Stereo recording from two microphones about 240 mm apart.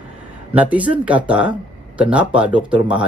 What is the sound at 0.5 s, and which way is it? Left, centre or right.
Speech, centre.